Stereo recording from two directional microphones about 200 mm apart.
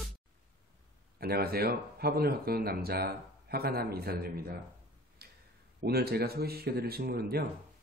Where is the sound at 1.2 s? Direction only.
50° right (ahead or behind).